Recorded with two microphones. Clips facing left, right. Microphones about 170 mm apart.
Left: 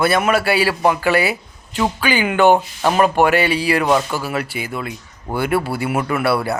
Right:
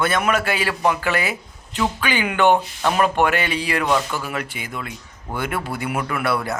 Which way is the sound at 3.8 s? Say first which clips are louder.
Left 4 dB; 30° left (ahead or behind).